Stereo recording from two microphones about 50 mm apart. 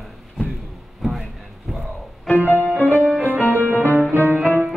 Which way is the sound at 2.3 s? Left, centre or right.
Left.